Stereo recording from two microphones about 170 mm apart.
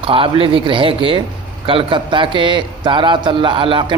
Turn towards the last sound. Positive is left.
turn(degrees=-30)  # may be behind; listen again after turning